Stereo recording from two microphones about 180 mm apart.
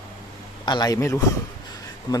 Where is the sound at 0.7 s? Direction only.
20° left (ahead or behind).